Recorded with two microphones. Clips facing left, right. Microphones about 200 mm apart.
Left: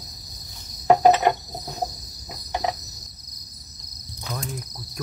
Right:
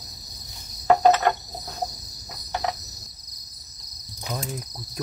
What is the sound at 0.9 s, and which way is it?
Cricket, 15° left (ahead or behind).